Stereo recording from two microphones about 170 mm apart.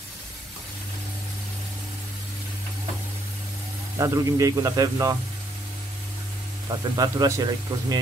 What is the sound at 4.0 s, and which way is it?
Speech, 20° right (ahead or behind).